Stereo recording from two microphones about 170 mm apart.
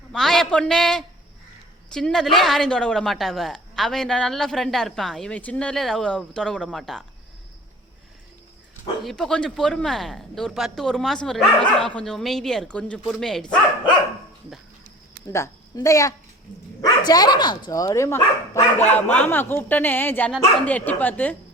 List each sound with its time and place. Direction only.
0.1 s a woman's voice: centre (ahead or behind)
9.0 s a woman's voice: 5° left (ahead or behind)
15.3 s a woman's voice: 15° left (ahead or behind)